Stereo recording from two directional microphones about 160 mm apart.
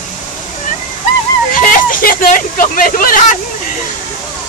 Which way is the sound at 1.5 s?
60° left (ahead or behind).